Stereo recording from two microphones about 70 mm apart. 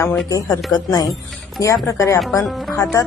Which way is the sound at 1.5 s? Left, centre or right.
Left.